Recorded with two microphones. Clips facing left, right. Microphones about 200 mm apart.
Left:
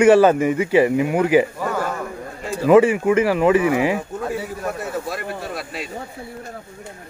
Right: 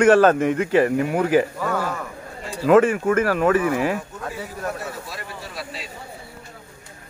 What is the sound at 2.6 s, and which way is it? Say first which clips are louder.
Speech: left 2 dB; 10° left (ahead or behind).